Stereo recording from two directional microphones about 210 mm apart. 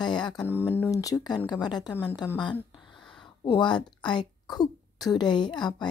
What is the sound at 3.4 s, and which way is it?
A woman's voice, 20° left (ahead or behind).